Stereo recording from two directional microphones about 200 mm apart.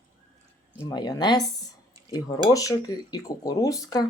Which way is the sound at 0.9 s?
20° left (ahead or behind).